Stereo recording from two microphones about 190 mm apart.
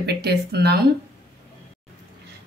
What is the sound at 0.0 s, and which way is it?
Speech, 60° right (ahead or behind).